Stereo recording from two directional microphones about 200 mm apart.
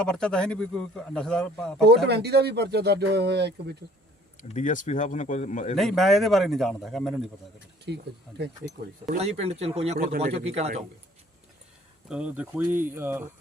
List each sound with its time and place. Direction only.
0.0 s a man's voice: 5° left (ahead or behind)
2.0 s speech: 55° right (ahead or behind)
4.4 s speech: 40° left (ahead or behind)
5.7 s a man's voice: centre (ahead or behind)
7.9 s speech: 60° right (ahead or behind)
8.6 s speech: 35° right (ahead or behind)
12.0 s speech: 5° right (ahead or behind)